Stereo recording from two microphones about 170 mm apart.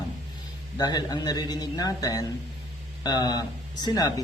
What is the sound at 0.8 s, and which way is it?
Speech, 20° left (ahead or behind).